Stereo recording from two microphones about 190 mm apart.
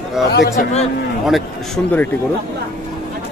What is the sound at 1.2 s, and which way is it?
Speech, centre (ahead or behind).